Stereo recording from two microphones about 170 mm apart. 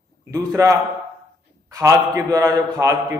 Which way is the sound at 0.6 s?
20° right (ahead or behind).